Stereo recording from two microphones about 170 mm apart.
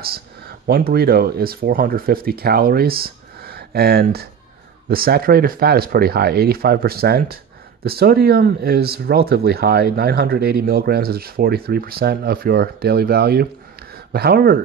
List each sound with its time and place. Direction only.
0.0 s speech: 65° right (ahead or behind)